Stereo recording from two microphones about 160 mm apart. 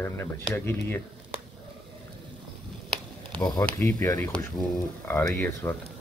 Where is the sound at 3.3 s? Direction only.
5° left (ahead or behind).